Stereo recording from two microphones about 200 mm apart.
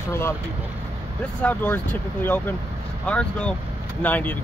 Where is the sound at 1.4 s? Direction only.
10° left (ahead or behind).